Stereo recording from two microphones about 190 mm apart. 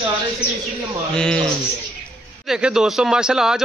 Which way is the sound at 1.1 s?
5° left (ahead or behind).